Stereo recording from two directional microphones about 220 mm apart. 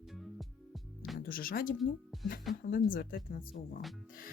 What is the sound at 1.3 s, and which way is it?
Speech, 40° left (ahead or behind).